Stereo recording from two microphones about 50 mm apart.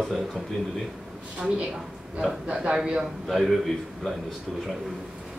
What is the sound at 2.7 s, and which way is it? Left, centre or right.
Speech, centre.